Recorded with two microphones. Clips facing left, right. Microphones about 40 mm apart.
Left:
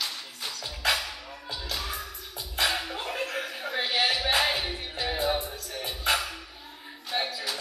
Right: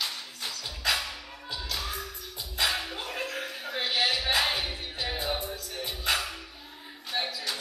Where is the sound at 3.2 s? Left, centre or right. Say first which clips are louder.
Left 2 dB; left.